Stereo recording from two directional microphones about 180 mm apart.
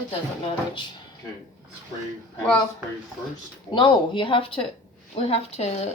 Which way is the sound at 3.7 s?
25° left (ahead or behind).